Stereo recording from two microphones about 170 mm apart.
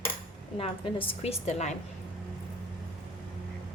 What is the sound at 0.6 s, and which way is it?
A woman's voice, 35° left (ahead or behind).